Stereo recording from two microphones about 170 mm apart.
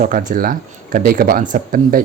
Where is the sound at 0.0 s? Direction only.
50° right (ahead or behind).